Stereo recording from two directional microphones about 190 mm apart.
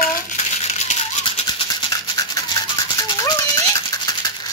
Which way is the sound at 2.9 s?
20° left (ahead or behind).